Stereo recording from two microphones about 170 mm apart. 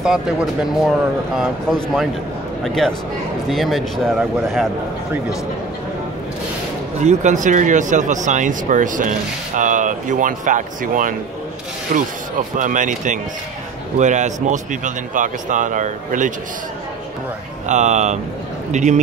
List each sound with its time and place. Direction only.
0.0 s speech: centre (ahead or behind)
7.0 s speech: 45° right (ahead or behind)
17.6 s speech: 45° right (ahead or behind)